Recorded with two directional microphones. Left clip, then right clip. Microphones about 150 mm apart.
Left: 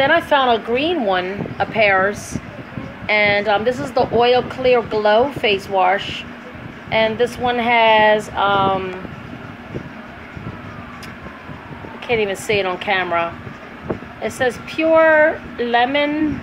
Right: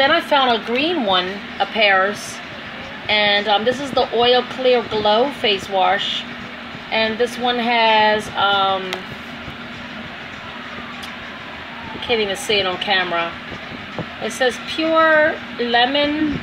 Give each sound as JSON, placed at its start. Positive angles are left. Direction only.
{"t": 0.0, "sound": "a woman's voice", "side_deg": 45}
{"t": 3.1, "sound": "a woman's voice", "side_deg": 50}
{"t": 12.1, "sound": "a woman's voice", "side_deg": 50}
{"t": 14.4, "sound": "a woman's voice", "side_deg": 50}